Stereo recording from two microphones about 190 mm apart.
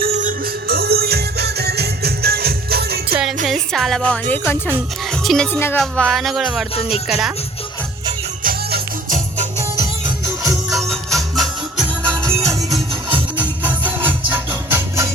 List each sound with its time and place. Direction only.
0.0 s music: 50° right (ahead or behind)
3.4 s a woman's voice: centre (ahead or behind)
5.5 s speech: 10° left (ahead or behind)
5.8 s speech: centre (ahead or behind)
8.4 s music: 45° right (ahead or behind)
10.7 s music: centre (ahead or behind)
13.3 s music: 10° right (ahead or behind)